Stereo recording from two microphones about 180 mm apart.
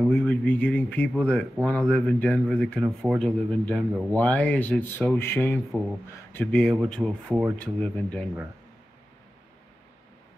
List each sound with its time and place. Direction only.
0.1 s a man's voice: 10° left (ahead or behind)